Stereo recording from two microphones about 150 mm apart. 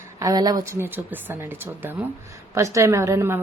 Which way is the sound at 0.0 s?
25° right (ahead or behind).